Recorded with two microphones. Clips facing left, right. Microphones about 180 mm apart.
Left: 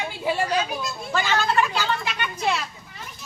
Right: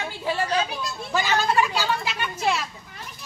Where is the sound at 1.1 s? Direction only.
10° right (ahead or behind).